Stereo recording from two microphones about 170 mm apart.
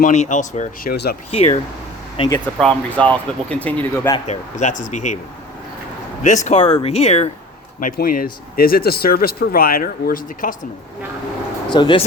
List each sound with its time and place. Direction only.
0.0 s speech: 45° left (ahead or behind); by 2.4 s 30° left (ahead or behind)
2.6 s speech: 5° left (ahead or behind)
4.3 s speech: 45° left (ahead or behind)
6.2 s speech: 45° left (ahead or behind)
7.8 s speech: 55° left (ahead or behind)
11.7 s speech: 30° left (ahead or behind)